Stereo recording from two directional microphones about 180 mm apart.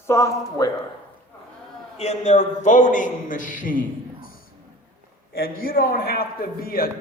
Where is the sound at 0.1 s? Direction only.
15° left (ahead or behind).